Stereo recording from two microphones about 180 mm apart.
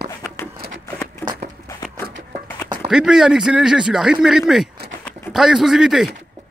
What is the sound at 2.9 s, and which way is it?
A man's voice, 5° right (ahead or behind).